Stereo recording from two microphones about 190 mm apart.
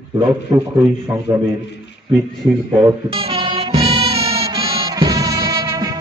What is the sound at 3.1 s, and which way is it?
Music, 30° right (ahead or behind).